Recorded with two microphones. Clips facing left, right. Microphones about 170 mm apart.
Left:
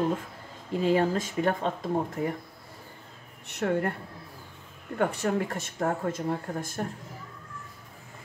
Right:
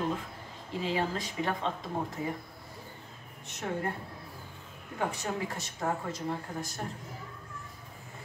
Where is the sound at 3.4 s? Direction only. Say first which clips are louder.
Left 7 dB; 65° left (ahead or behind).